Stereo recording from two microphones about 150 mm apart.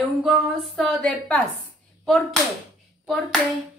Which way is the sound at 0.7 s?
5° left (ahead or behind).